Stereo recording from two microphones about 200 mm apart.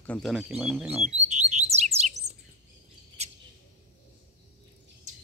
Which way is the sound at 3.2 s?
30° right (ahead or behind).